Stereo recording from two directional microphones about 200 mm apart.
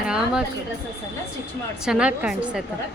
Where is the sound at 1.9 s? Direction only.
5° right (ahead or behind).